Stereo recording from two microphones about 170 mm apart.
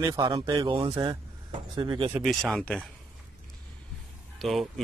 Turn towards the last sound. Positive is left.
turn(degrees=0)  # may be behind; listen again after turning